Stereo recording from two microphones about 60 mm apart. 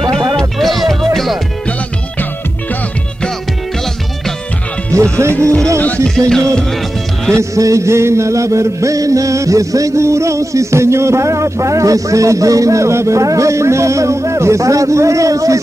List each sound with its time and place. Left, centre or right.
0.1 s music: centre
6.0 s music: centre
7.3 s music: right